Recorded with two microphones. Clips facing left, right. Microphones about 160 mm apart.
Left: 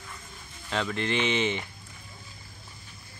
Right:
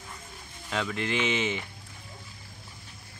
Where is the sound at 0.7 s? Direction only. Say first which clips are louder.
Left 1 dB; 5° right (ahead or behind).